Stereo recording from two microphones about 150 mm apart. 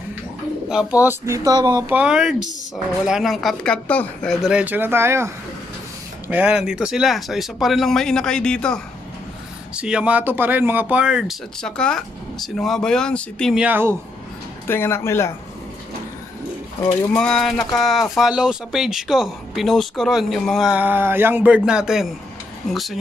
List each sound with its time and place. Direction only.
0.7 s speech: 10° right (ahead or behind)
2.0 s speech: 5° right (ahead or behind)
9.8 s speech: 5° right (ahead or behind)
13.6 s speech: 10° right (ahead or behind)
14.7 s speech: 15° left (ahead or behind)
17.1 s speech: 5° left (ahead or behind)